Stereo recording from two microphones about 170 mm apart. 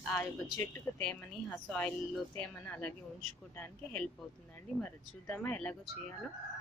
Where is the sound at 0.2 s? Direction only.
10° left (ahead or behind).